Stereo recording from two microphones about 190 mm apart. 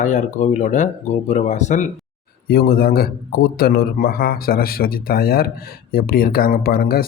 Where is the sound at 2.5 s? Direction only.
55° left (ahead or behind).